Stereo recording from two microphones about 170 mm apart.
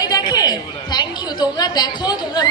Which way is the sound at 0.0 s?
25° left (ahead or behind).